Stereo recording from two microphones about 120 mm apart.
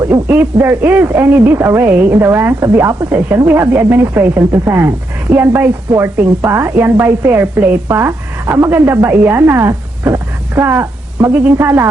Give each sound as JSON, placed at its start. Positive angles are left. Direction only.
{"t": 0.1, "sound": "speech", "side_deg": -15}